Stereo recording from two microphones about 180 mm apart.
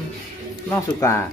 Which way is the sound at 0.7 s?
15° left (ahead or behind).